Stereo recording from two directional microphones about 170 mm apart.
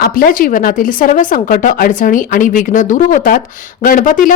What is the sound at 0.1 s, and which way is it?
Speech, 55° left (ahead or behind).